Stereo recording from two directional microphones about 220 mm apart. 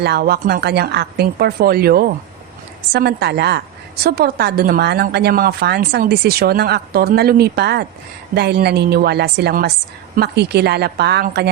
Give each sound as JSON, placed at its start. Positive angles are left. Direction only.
{"t": 0.0, "sound": "a woman's voice", "side_deg": -45}